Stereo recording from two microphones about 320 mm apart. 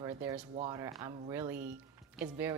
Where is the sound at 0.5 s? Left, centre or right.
Centre.